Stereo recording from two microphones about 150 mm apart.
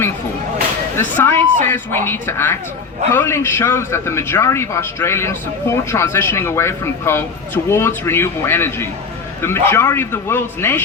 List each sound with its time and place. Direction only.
0.9 s a man's voice: 15° left (ahead or behind)